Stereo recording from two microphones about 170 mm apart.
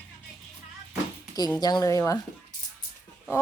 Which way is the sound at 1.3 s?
20° left (ahead or behind).